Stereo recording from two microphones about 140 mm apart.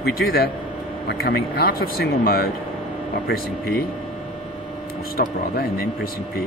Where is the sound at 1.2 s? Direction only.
90° left.